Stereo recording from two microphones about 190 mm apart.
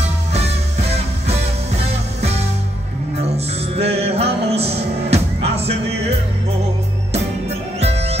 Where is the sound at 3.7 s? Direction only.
30° right (ahead or behind).